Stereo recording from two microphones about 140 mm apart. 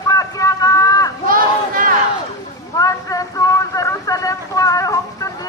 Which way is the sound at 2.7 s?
25° left (ahead or behind).